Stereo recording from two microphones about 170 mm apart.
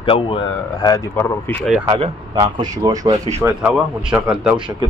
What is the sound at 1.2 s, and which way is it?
Speech, 10° left (ahead or behind).